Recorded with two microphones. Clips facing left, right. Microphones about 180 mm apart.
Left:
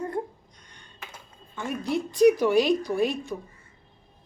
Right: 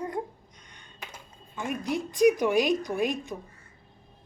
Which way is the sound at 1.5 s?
15° right (ahead or behind).